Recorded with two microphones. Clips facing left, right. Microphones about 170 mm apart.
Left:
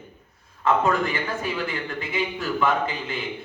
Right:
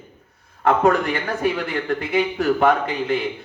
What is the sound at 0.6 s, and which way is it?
A man's voice, 65° right (ahead or behind).